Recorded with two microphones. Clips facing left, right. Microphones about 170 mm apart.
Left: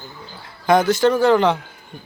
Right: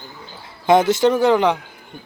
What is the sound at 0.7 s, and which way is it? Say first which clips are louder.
Speech: right 1 dB; 25° right (ahead or behind).